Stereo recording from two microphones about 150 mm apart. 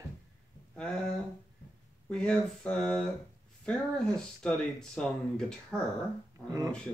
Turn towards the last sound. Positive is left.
turn(degrees=5)  # may be behind; listen again after turning